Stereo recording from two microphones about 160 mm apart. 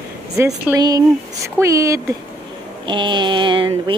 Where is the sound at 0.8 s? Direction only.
25° right (ahead or behind).